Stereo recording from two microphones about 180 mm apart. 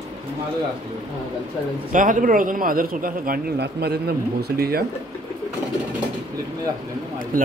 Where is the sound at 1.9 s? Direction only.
45° right (ahead or behind).